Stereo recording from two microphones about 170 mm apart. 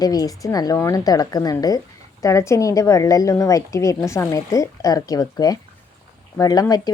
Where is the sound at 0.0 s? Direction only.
20° left (ahead or behind).